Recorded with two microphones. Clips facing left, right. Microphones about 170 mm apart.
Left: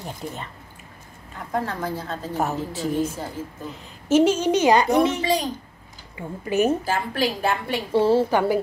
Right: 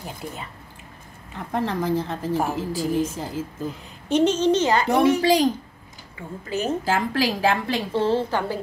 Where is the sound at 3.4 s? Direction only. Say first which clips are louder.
Right 3 dB; 90° right.